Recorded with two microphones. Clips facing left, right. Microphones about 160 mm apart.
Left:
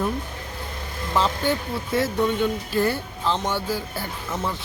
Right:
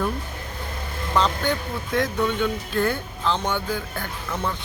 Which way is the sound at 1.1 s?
5° left (ahead or behind).